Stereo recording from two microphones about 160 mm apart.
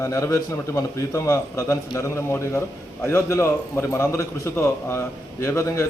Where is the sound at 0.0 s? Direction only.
20° left (ahead or behind).